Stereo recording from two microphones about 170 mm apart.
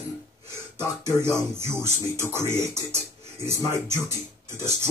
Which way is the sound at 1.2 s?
15° right (ahead or behind).